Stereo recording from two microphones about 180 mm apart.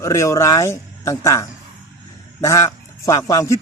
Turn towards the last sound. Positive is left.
turn(degrees=20)  # may be behind; listen again after turning